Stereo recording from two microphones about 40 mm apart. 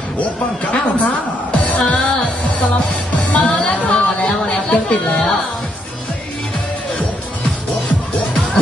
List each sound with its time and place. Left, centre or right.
0.7 s a woman's voice: left
1.6 s music: left
3.2 s music: left
3.4 s music: left
3.8 s chatter: left
4.7 s chatter: left